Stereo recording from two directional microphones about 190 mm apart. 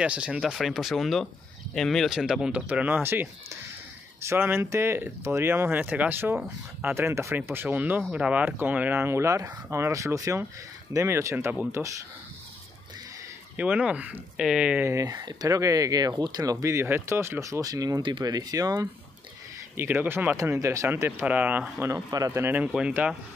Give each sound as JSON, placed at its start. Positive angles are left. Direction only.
{"t": 0.0, "sound": "speech", "side_deg": -5}
{"t": 13.6, "sound": "speech", "side_deg": -5}